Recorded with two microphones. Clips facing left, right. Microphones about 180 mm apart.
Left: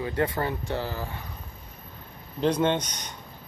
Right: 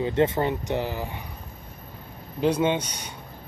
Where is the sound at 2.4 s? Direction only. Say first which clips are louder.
Right 1 dB; 10° right (ahead or behind).